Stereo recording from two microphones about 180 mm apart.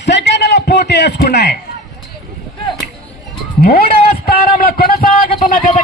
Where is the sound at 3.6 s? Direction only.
60° left (ahead or behind).